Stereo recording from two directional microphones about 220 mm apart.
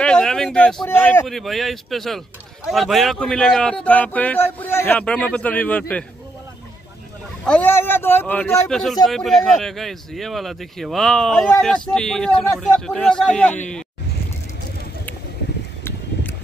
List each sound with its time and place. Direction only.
0.0 s speech: 5° left (ahead or behind)
7.4 s speech: 5° left (ahead or behind)
15.8 s a sound: 10° left (ahead or behind)